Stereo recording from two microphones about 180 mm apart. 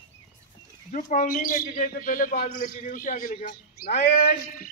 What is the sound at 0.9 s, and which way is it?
Speech, 45° left (ahead or behind).